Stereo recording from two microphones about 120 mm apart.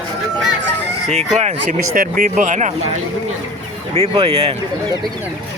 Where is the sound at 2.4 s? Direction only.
90° right.